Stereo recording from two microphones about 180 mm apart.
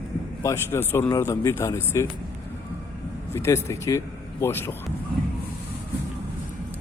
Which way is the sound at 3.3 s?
15° left (ahead or behind).